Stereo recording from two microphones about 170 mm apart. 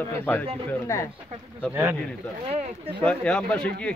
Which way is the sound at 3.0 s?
5° left (ahead or behind).